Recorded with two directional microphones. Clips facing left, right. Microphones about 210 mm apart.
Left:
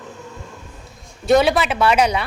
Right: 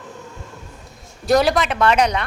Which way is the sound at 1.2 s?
Centre (ahead or behind).